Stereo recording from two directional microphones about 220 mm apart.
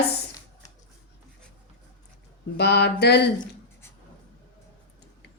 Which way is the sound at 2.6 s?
50° left (ahead or behind).